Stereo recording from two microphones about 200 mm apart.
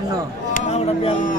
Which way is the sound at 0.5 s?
35° left (ahead or behind).